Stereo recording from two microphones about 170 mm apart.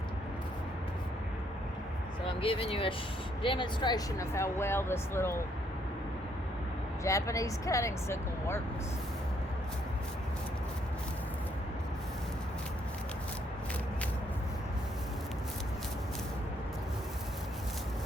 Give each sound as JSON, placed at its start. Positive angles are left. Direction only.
{"t": 2.2, "sound": "speech", "side_deg": 30}
{"t": 7.0, "sound": "speech", "side_deg": 20}